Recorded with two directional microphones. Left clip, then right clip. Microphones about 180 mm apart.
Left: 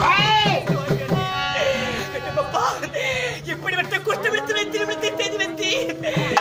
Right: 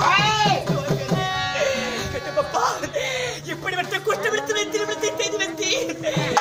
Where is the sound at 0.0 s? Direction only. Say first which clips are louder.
Left 1 dB; 5° left (ahead or behind).